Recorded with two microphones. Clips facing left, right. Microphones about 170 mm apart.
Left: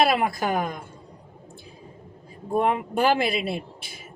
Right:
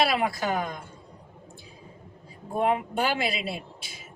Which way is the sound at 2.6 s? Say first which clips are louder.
Left 2 dB; 50° left (ahead or behind).